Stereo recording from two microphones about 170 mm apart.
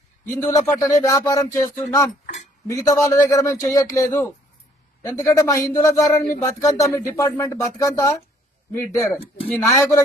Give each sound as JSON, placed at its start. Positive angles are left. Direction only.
{"t": 0.3, "sound": "speech", "side_deg": 15}